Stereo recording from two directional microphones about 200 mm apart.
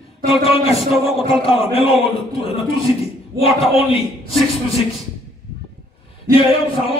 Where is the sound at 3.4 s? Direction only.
30° left (ahead or behind).